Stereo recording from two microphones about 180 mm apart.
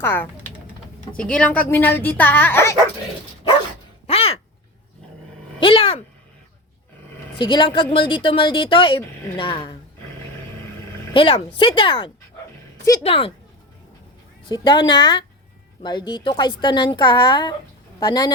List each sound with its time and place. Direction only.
0.0 s speech: 10° left (ahead or behind)
4.0 s a sound: 35° left (ahead or behind)
5.5 s a sound: 30° left (ahead or behind)
7.3 s a woman's voice: 25° left (ahead or behind)
11.1 s a woman's voice: 30° left (ahead or behind)
14.4 s a woman's voice: 25° left (ahead or behind)